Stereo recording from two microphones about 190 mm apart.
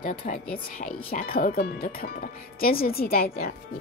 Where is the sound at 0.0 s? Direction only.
40° left (ahead or behind).